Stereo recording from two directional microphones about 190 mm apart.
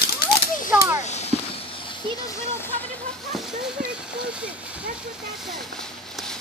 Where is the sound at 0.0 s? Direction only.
55° left (ahead or behind).